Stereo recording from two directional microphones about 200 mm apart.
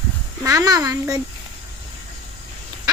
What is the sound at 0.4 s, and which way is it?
Speech, 15° right (ahead or behind).